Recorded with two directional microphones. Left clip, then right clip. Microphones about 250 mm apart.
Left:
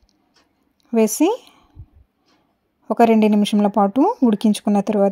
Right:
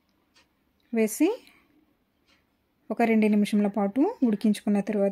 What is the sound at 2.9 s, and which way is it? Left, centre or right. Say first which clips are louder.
Speech: left 9 dB; left.